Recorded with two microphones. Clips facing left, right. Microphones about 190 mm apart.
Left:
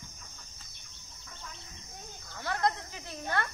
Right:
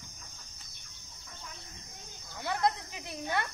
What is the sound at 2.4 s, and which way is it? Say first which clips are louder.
Snake: even; 15° right (ahead or behind).